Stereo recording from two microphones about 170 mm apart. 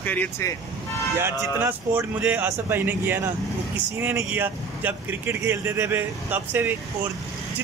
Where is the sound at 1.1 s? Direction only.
15° right (ahead or behind).